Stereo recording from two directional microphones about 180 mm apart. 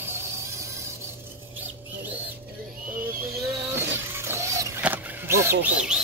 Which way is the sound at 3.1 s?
65° right (ahead or behind).